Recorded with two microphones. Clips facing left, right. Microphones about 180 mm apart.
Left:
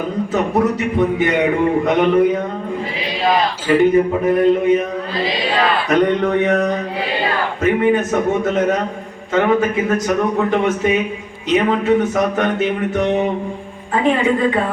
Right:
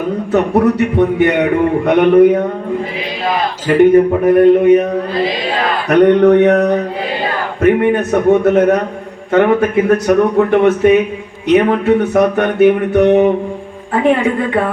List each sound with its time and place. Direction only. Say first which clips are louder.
0.3 s speech: right 6 dB; 65° right (ahead or behind)
3.7 s speech: right 5 dB; 60° right (ahead or behind)